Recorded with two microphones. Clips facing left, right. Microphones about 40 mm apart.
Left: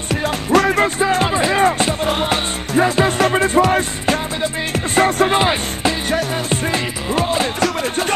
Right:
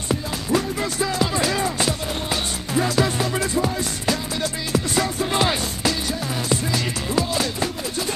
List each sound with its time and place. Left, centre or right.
0.1 s music: left
0.8 s speech: left
1.3 s music: left
1.6 s music: left
5.4 s music: left